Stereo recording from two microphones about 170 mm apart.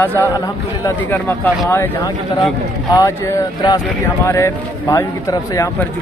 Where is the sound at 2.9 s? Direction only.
20° left (ahead or behind).